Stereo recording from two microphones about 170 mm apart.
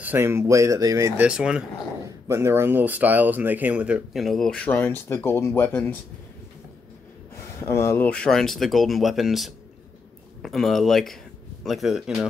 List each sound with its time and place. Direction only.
0.0 s speech: 15° right (ahead or behind)
1.2 s speech: 5° right (ahead or behind)
2.2 s speech: 15° right (ahead or behind); by 5.9 s 10° left (ahead or behind)
7.6 s speech: 15° left (ahead or behind); by 12.3 s centre (ahead or behind)